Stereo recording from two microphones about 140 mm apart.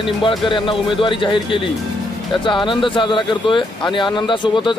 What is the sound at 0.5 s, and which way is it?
Speech, 35° left (ahead or behind).